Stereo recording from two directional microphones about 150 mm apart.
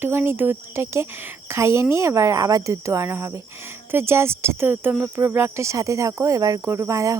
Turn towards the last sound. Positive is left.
turn(degrees=-20)  # may be behind; listen again after turning